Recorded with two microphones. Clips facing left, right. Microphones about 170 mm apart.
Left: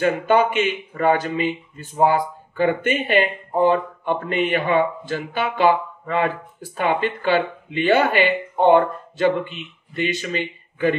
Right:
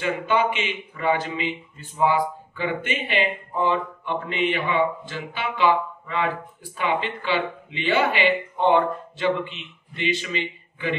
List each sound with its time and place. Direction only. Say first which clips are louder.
0.0 s speech: left 5 dB; 45° left (ahead or behind)